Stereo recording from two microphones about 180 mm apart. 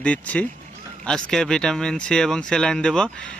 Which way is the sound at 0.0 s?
5° left (ahead or behind).